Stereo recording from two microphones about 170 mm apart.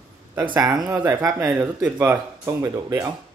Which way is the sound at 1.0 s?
20° right (ahead or behind).